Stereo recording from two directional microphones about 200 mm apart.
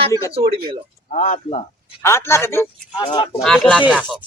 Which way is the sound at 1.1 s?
35° left (ahead or behind).